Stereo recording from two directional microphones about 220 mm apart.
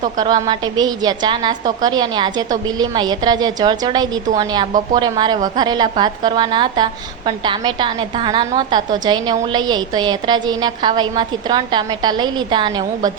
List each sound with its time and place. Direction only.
0.2 s a woman's voice: 20° right (ahead or behind)